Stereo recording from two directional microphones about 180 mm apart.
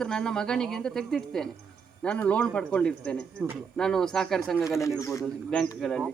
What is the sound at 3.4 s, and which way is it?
Speech, 10° right (ahead or behind).